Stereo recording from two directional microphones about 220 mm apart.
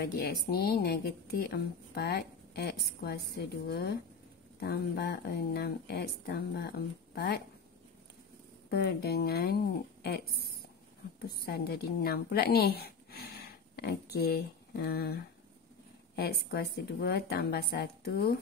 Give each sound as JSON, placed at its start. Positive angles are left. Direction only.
{"t": 0.0, "sound": "a woman's voice", "side_deg": 45}
{"t": 8.6, "sound": "a woman's voice", "side_deg": 45}
{"t": 16.2, "sound": "a woman's voice", "side_deg": 45}